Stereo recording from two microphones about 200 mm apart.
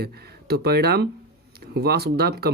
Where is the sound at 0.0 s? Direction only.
50° right (ahead or behind).